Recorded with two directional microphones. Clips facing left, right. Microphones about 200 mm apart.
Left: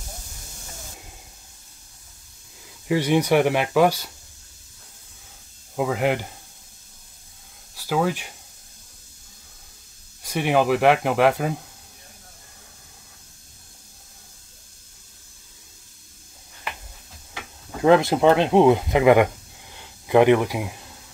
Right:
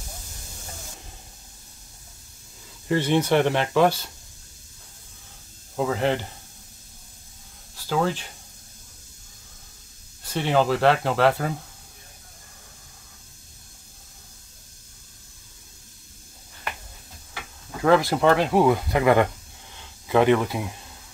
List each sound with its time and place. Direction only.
2.9 s speech: 10° left (ahead or behind)
5.8 s speech: 10° left (ahead or behind)
7.7 s speech: 10° left (ahead or behind)
10.2 s speech: 10° left (ahead or behind)
17.3 s speech: 20° left (ahead or behind)